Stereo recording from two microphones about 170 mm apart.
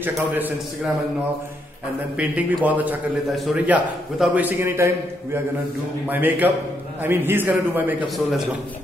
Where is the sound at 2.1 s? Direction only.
10° right (ahead or behind).